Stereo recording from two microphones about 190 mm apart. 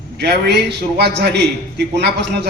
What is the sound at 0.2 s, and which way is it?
Speech, 60° right (ahead or behind).